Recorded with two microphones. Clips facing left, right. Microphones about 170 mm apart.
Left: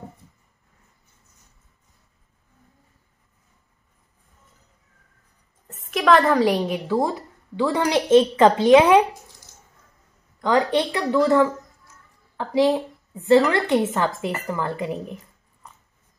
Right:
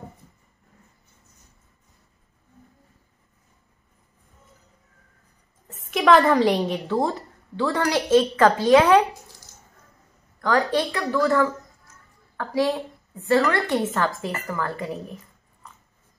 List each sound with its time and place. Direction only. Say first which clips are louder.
5.7 s a woman's voice: even; centre (ahead or behind)
7.5 s a woman's voice: left 2 dB; 15° left (ahead or behind)
10.4 s a woman's voice: left 2 dB; 20° left (ahead or behind)